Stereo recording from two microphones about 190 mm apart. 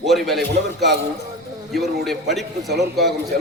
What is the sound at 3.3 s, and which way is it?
Speech, 50° right (ahead or behind).